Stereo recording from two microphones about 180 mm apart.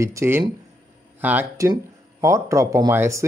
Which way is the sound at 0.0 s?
15° right (ahead or behind).